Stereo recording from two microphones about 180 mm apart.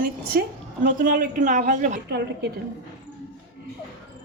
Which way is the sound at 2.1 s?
65° right (ahead or behind).